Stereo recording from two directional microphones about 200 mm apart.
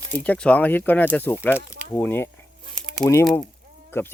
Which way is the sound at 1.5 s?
10° right (ahead or behind).